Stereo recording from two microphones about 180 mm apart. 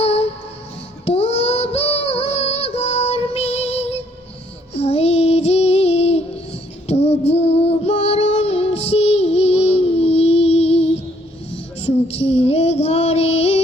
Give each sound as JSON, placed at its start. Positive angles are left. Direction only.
{"t": 0.0, "sound": "music", "side_deg": 35}
{"t": 4.7, "sound": "child singing", "side_deg": 35}